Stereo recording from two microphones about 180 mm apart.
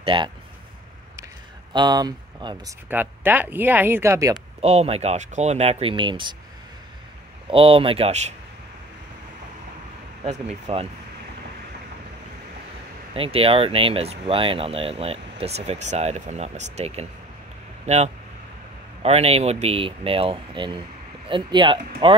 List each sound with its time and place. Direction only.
0.0 s speech: 30° right (ahead or behind)
1.7 s speech: 25° right (ahead or behind)
2.9 s speech: 10° right (ahead or behind)
4.6 s speech: 35° right (ahead or behind)
7.4 s speech: 30° right (ahead or behind)
10.2 s speech: 35° right (ahead or behind)
13.1 s speech: 30° right (ahead or behind)